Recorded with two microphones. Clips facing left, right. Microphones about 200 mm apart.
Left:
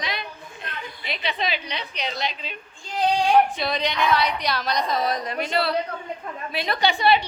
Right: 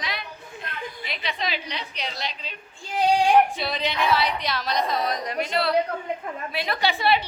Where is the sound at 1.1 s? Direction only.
25° left (ahead or behind).